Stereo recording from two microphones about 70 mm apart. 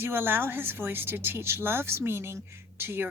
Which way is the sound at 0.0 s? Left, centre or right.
Right.